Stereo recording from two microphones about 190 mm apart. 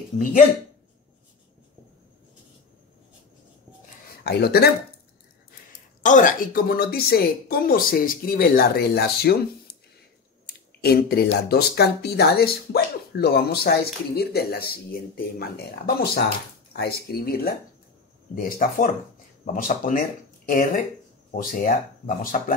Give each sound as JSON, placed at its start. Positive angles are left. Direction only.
{"t": 4.2, "sound": "speech", "side_deg": 55}
{"t": 6.0, "sound": "a woman's voice", "side_deg": 45}
{"t": 10.8, "sound": "a woman's voice", "side_deg": 55}